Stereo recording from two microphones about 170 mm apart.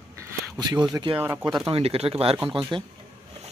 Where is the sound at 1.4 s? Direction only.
25° right (ahead or behind).